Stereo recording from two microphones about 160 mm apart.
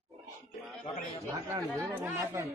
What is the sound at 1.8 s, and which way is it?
Speech, 15° right (ahead or behind).